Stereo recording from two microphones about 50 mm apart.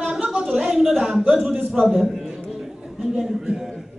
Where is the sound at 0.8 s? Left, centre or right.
Centre.